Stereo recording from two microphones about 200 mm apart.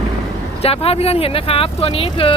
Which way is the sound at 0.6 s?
30° left (ahead or behind).